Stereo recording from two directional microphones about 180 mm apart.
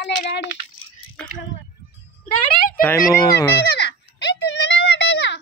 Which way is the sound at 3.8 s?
70° left (ahead or behind).